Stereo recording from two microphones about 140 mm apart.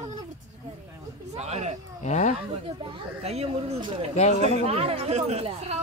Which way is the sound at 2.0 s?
60° left (ahead or behind).